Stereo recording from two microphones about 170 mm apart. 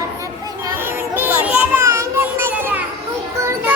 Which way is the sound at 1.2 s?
10° right (ahead or behind).